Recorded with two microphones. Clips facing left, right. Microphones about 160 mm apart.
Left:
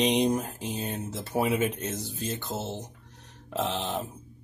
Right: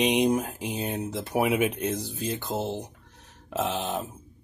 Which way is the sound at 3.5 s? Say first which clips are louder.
Right 1 dB; centre (ahead or behind).